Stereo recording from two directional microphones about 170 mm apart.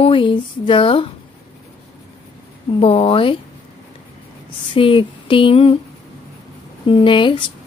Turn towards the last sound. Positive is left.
turn(degrees=30)  # may be behind; listen again after turning